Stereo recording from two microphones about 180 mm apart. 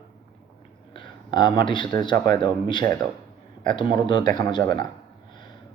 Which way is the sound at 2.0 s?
25° left (ahead or behind).